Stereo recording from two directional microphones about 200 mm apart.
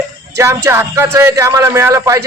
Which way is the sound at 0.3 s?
15° right (ahead or behind).